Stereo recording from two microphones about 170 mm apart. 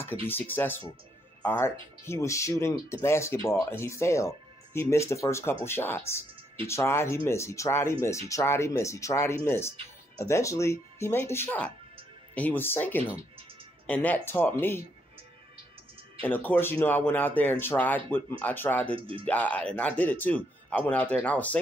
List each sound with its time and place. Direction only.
0.0 s speech: 10° left (ahead or behind)
16.2 s speech: 10° left (ahead or behind)
18.9 s speech: 30° right (ahead or behind)
19.2 s speech: 10° left (ahead or behind)